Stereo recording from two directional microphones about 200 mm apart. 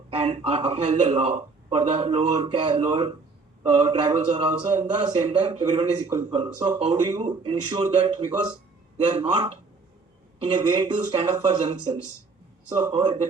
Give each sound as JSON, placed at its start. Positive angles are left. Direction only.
{"t": 0.2, "sound": "a man's voice", "side_deg": -30}
{"t": 9.1, "sound": "a man's voice", "side_deg": -30}
{"t": 12.7, "sound": "a man's voice", "side_deg": -25}